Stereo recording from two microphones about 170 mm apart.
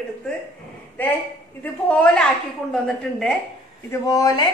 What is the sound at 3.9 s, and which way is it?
Speech, 20° left (ahead or behind).